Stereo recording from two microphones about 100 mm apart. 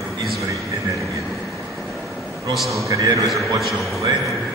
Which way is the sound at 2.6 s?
Centre (ahead or behind).